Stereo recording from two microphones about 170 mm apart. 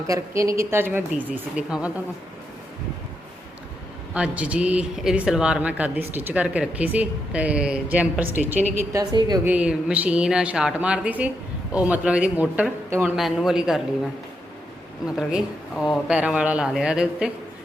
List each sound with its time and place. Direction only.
0.1 s speech: 20° right (ahead or behind)
4.1 s a woman's voice: 5° right (ahead or behind); by 9.4 s 25° right (ahead or behind)
9.4 s a man's voice: 10° right (ahead or behind)